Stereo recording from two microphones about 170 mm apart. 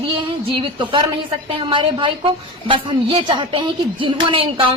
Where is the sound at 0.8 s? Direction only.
30° right (ahead or behind).